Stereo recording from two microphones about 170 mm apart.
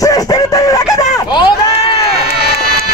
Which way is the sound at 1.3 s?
30° left (ahead or behind).